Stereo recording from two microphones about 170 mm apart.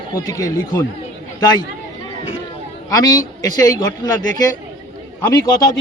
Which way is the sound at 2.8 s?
20° left (ahead or behind).